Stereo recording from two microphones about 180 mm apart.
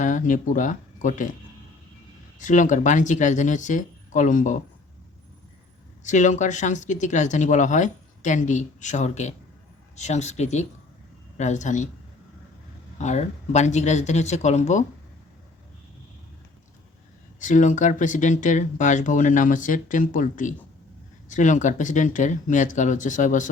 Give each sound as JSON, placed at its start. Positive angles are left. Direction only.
{"t": 0.0, "sound": "speech", "side_deg": 45}
{"t": 2.4, "sound": "speech", "side_deg": 45}
{"t": 6.0, "sound": "speech", "side_deg": 45}
{"t": 13.0, "sound": "speech", "side_deg": 40}
{"t": 17.4, "sound": "speech", "side_deg": 45}